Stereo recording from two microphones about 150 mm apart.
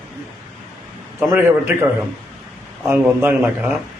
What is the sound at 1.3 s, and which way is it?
Speech, 15° right (ahead or behind).